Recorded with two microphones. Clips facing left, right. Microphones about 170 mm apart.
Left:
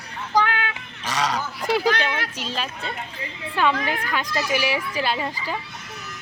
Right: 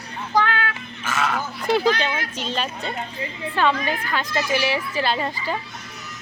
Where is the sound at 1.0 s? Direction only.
35° left (ahead or behind).